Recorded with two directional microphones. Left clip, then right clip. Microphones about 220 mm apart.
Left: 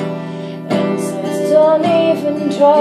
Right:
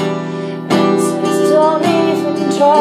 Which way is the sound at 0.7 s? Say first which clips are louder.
Right 4 dB; 35° right (ahead or behind).